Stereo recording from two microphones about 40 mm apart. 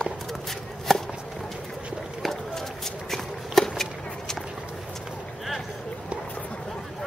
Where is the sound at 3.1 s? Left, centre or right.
Centre.